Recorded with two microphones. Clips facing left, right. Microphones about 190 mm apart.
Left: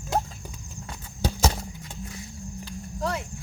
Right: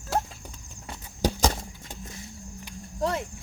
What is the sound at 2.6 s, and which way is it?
Cricket, 20° right (ahead or behind).